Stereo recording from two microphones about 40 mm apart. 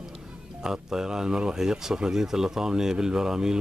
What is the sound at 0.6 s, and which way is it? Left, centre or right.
Speech, centre.